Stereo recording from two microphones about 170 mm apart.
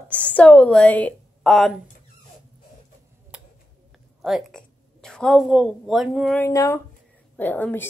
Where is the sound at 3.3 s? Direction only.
5° right (ahead or behind).